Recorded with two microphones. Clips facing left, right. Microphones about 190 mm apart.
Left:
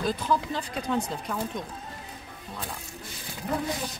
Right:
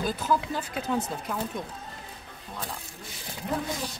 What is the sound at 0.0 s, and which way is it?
Speech, 5° right (ahead or behind).